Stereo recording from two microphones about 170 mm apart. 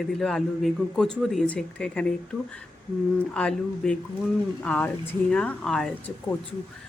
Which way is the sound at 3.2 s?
5° left (ahead or behind).